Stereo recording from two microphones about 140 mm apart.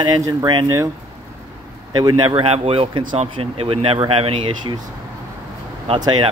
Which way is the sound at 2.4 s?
45° right (ahead or behind).